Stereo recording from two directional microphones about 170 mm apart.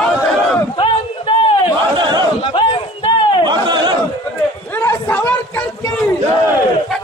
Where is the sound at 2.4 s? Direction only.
30° left (ahead or behind).